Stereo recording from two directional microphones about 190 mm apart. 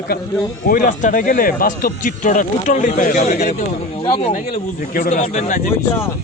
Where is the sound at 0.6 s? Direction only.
45° left (ahead or behind).